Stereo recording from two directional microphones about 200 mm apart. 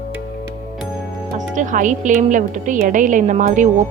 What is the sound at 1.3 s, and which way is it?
A woman's voice, 40° right (ahead or behind).